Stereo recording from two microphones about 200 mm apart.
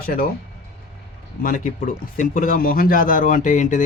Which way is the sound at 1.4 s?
45° left (ahead or behind).